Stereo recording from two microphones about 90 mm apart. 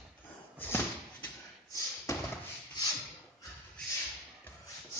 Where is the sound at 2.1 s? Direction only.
35° left (ahead or behind).